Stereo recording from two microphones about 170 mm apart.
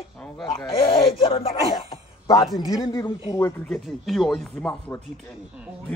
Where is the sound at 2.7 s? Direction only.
20° left (ahead or behind).